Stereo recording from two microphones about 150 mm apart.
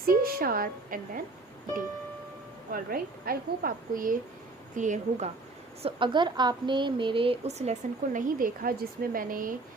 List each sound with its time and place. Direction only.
0.0 s a woman's voice: 85° right
2.7 s a woman's voice: 75° right (ahead or behind)
4.8 s a woman's voice: 55° right (ahead or behind)
5.8 s a woman's voice: 35° right (ahead or behind); by 9.6 s 70° right (ahead or behind)